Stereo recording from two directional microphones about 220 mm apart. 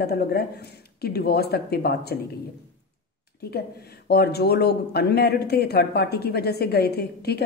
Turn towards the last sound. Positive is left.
turn(degrees=45)  # may be behind; listen again after turning